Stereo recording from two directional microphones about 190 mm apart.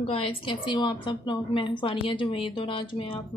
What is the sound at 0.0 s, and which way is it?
A woman's voice, 30° left (ahead or behind).